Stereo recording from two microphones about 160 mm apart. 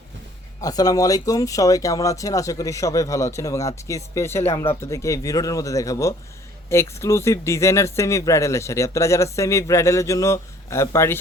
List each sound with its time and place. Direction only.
0.6 s speech: 25° left (ahead or behind)